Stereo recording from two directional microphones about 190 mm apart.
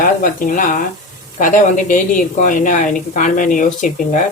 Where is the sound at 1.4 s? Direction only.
45° left (ahead or behind).